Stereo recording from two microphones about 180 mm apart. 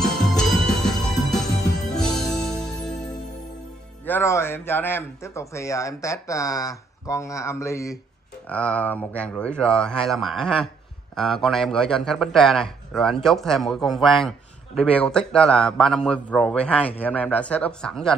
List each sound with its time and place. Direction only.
0.0 s music: 5° left (ahead or behind)
4.0 s a man's voice: 15° left (ahead or behind)